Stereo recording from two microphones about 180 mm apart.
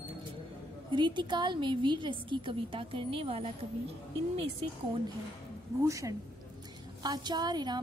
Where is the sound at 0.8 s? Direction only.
25° right (ahead or behind).